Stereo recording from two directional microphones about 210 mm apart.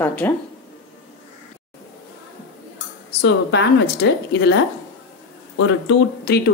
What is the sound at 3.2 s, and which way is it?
Speech, 55° left (ahead or behind).